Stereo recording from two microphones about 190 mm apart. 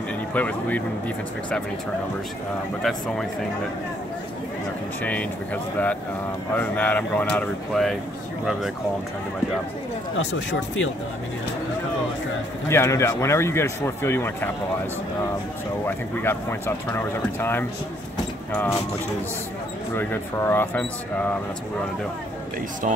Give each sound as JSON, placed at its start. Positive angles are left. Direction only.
{"t": 0.3, "sound": "speech", "side_deg": 10}
{"t": 2.8, "sound": "speech", "side_deg": 0}
{"t": 5.0, "sound": "speech", "side_deg": 10}
{"t": 10.1, "sound": "speech", "side_deg": 85}
{"t": 12.6, "sound": "speech", "side_deg": 15}
{"t": 15.8, "sound": "speech", "side_deg": 10}
{"t": 20.0, "sound": "speech", "side_deg": 10}